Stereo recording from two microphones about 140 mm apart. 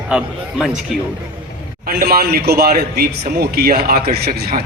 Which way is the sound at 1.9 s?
90° right.